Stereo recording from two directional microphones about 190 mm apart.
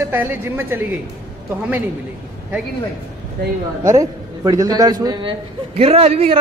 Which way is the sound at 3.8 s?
15° right (ahead or behind).